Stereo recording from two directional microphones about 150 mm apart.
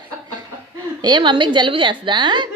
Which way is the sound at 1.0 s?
30° right (ahead or behind).